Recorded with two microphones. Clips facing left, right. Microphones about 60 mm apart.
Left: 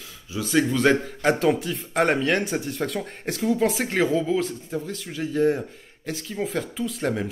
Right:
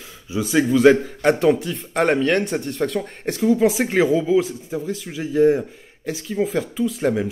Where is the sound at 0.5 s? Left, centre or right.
Centre.